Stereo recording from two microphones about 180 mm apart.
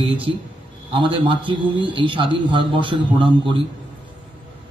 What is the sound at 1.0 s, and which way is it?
A man's voice, 25° right (ahead or behind).